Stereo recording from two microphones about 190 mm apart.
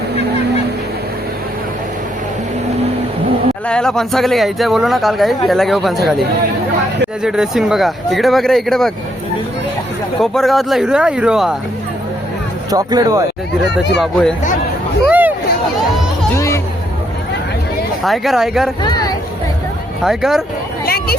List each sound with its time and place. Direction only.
3.7 s speech: 5° left (ahead or behind)
10.2 s speech: centre (ahead or behind)
12.7 s speech: 20° right (ahead or behind)
14.0 s speech: 5° left (ahead or behind)
15.0 s hubbub: 10° right (ahead or behind)
18.0 s speech: centre (ahead or behind)
18.8 s speech: 20° left (ahead or behind)
20.1 s speech: centre (ahead or behind)
20.8 s a sound: 55° left (ahead or behind)